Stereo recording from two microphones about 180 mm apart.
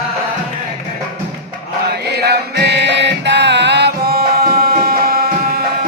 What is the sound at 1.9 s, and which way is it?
Music, 65° right (ahead or behind).